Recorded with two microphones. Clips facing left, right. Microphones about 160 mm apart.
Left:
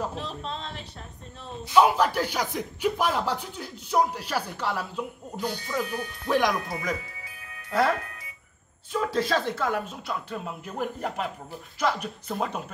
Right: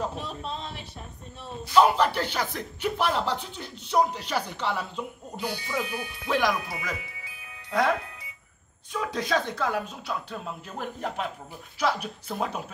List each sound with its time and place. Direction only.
0.2 s speech: 5° right (ahead or behind)
1.7 s speech: 10° left (ahead or behind)
5.4 s speech: 10° right (ahead or behind)
8.9 s speech: centre (ahead or behind)